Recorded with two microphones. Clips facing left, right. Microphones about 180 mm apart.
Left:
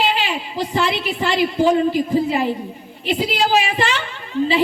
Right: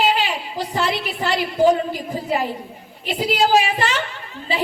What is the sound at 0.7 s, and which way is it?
A woman's voice, 40° right (ahead or behind).